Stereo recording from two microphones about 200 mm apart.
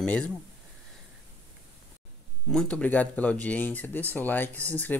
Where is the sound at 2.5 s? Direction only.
5° left (ahead or behind).